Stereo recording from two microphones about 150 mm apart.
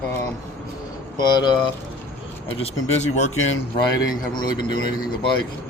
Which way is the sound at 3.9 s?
25° left (ahead or behind).